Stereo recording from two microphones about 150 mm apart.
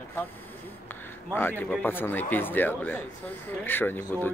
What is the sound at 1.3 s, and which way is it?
Speech, 15° left (ahead or behind).